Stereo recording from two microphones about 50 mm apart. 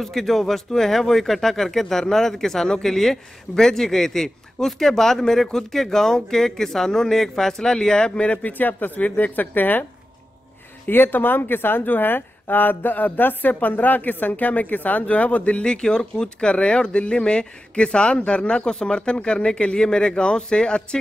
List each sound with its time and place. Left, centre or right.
0.0 s speech: centre
8.3 s speech: left
10.9 s speech: left; by 21.0 s centre